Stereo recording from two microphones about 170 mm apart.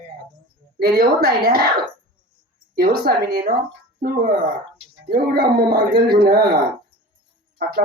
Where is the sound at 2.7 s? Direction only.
65° right (ahead or behind).